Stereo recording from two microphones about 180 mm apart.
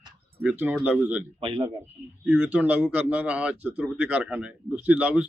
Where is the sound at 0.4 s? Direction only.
10° right (ahead or behind).